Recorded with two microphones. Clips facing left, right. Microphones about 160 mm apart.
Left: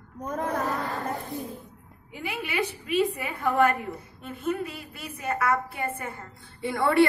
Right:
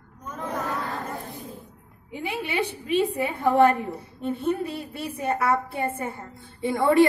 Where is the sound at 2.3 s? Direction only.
30° right (ahead or behind).